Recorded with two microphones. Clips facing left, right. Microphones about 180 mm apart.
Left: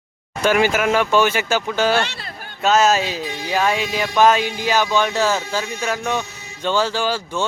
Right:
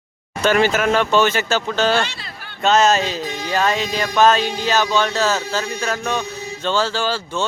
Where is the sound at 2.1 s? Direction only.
55° left (ahead or behind).